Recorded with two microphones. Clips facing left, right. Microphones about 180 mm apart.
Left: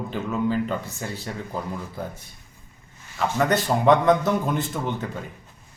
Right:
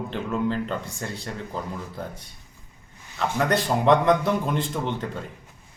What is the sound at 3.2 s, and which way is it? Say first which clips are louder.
A man's voice: left 1 dB; centre (ahead or behind).